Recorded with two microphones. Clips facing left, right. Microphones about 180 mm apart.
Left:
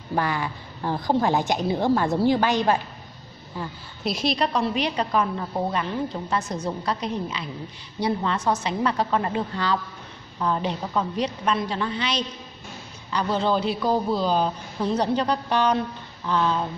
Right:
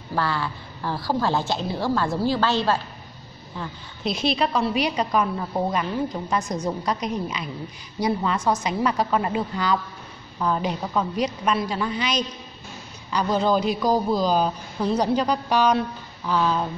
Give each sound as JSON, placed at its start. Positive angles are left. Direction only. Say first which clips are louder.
{"t": 0.1, "sound": "a woman's voice", "louder": "even", "side_deg": 15}
{"t": 3.5, "sound": "a woman's voice", "louder": "left 1 dB", "side_deg": 0}